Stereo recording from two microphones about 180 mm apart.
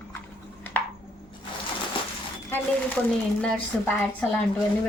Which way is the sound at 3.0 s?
5° left (ahead or behind).